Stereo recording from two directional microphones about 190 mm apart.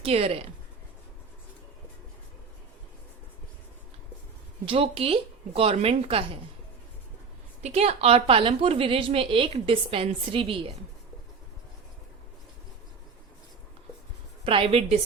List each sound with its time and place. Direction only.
0.0 s a woman's voice: 30° right (ahead or behind)
4.6 s a woman's voice: 30° right (ahead or behind)
7.6 s a woman's voice: 35° right (ahead or behind)
14.4 s a woman's voice: 30° right (ahead or behind)